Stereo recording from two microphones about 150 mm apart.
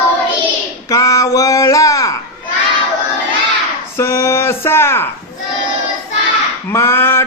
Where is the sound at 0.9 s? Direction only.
20° left (ahead or behind).